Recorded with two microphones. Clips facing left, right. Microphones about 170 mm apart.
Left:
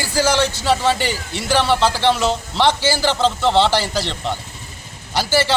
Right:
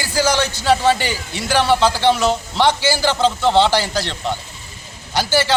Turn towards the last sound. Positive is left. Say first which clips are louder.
# right 1 dB
turn(degrees=5)  # may be behind; listen again after turning